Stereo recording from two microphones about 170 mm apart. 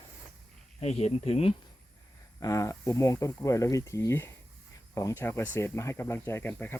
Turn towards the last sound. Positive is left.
turn(degrees=10)  # may be behind; listen again after turning